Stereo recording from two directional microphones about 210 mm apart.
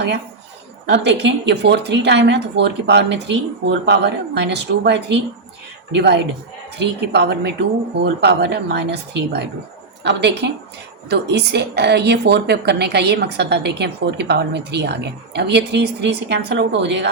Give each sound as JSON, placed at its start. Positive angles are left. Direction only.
{"t": 0.9, "sound": "a woman's voice", "side_deg": -55}